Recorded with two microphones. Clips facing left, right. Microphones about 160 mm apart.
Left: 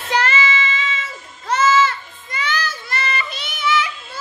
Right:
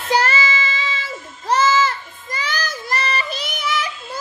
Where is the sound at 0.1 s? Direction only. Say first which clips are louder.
Right 1 dB; 35° right (ahead or behind).